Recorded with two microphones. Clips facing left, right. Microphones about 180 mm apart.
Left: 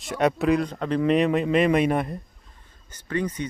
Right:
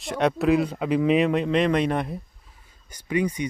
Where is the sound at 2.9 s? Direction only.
10° right (ahead or behind).